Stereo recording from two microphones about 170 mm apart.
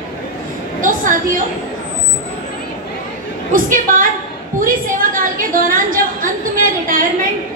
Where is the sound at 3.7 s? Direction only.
50° right (ahead or behind).